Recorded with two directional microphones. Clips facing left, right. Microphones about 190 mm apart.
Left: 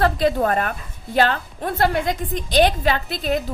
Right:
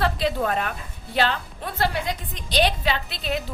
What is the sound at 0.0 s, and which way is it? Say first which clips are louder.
A woman's voice: left 5 dB; 45° left (ahead or behind).